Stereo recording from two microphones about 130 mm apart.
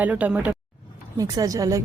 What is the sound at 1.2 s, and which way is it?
Speech, 30° right (ahead or behind).